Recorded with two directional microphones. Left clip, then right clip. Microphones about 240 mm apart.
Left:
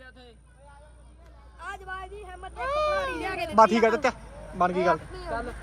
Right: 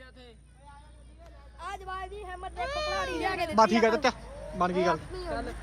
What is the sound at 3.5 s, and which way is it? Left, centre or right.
A man's voice, centre.